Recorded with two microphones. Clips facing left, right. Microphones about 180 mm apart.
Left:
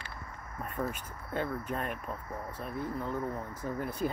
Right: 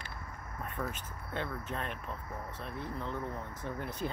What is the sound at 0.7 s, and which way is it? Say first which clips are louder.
Speech: left 4 dB; 5° left (ahead or behind).